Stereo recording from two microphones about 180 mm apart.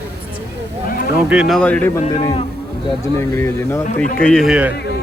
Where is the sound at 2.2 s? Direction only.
25° left (ahead or behind); by 4.7 s 5° right (ahead or behind).